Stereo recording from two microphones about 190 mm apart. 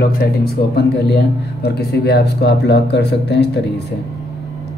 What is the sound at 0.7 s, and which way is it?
Speech, 60° left (ahead or behind).